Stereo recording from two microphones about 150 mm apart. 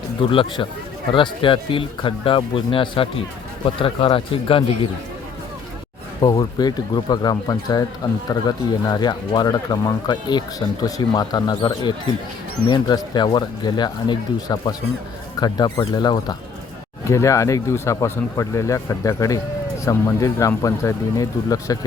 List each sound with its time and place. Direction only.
0.2 s speech: 35° left (ahead or behind)
6.1 s speech: 25° left (ahead or behind)